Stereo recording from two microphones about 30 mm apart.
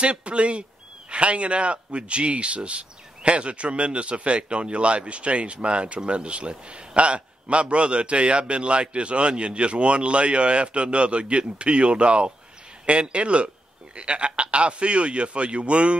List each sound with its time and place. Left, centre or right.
0.0 s speech: right